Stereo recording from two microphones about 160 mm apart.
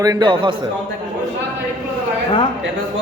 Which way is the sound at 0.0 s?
25° right (ahead or behind).